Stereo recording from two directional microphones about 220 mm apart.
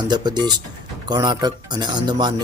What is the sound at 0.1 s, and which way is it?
Speech, 20° right (ahead or behind).